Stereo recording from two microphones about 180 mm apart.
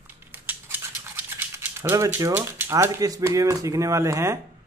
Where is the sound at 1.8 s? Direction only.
15° right (ahead or behind).